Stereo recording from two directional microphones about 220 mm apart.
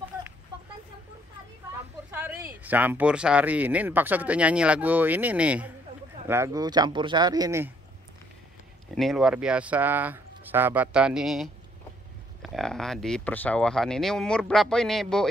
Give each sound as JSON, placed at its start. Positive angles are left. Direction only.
{"t": 2.1, "sound": "speech", "side_deg": -10}
{"t": 8.9, "sound": "speech", "side_deg": 0}